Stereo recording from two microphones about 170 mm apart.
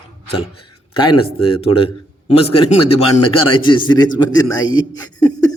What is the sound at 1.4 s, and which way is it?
A man's voice, 35° left (ahead or behind).